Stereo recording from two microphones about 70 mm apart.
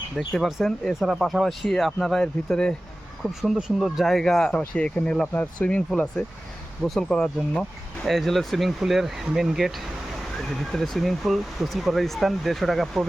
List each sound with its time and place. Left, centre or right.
0.2 s speech: centre
2.2 s speech: centre
3.2 s speech: centre
8.0 s speech: centre